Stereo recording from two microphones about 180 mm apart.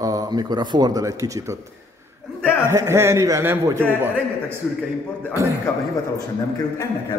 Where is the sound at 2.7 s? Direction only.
15° right (ahead or behind).